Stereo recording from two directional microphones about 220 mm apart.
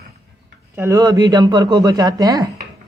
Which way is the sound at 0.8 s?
15° right (ahead or behind).